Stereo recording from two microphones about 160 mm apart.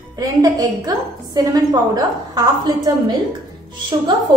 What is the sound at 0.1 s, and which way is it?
A woman's voice, 25° right (ahead or behind).